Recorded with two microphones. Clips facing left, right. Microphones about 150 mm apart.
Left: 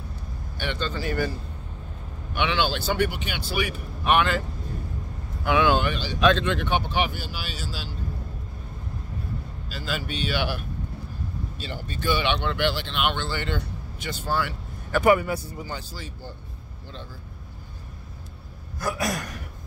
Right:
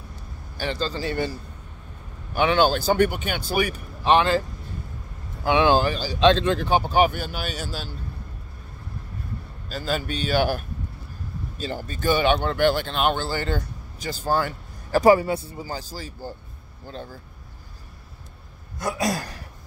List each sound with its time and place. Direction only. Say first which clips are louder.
0.6 s speech: right 3 dB; 35° right (ahead or behind)
2.3 s speech: right 6 dB; 40° right (ahead or behind)
4.0 s speech: right 3 dB; 30° right (ahead or behind)
5.4 s speech: right 3 dB; 30° right (ahead or behind); by 7.9 s 50° right (ahead or behind)
9.7 s speech: right 5 dB; 45° right (ahead or behind)
18.8 s a sound: right 2 dB; 25° right (ahead or behind)